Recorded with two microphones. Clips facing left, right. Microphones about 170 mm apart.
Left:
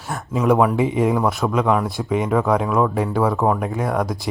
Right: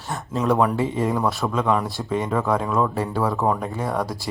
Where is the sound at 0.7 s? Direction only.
15° left (ahead or behind).